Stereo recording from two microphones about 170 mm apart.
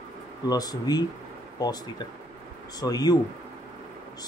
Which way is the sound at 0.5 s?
20° left (ahead or behind).